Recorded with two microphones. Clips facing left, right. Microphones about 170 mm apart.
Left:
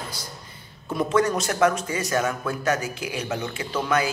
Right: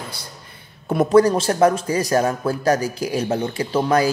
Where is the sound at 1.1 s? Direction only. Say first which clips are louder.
Right 8 dB; 30° right (ahead or behind).